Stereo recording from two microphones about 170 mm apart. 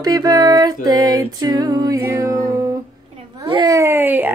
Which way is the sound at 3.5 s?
25° right (ahead or behind).